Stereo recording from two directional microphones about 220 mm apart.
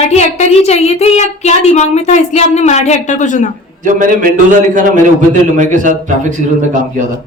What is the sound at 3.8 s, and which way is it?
Speech, 35° right (ahead or behind).